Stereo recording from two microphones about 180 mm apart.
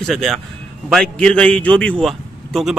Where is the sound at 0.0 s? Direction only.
Centre (ahead or behind).